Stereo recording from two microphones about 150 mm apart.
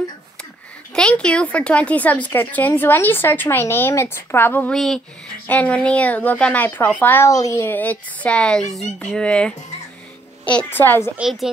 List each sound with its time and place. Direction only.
0.9 s speech: 5° left (ahead or behind)
11.1 s a woman's voice: centre (ahead or behind)